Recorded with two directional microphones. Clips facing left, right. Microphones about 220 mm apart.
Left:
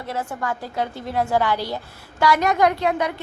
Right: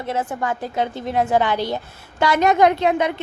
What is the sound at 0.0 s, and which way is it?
A woman's voice, 20° right (ahead or behind).